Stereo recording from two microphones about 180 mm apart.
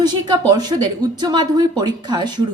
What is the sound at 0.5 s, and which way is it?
A woman's voice, 20° right (ahead or behind).